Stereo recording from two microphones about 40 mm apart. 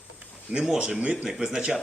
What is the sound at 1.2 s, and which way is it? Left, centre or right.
Speech, centre.